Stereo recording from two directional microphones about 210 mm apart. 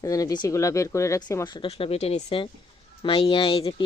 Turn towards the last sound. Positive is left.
turn(degrees=25)  # may be behind; listen again after turning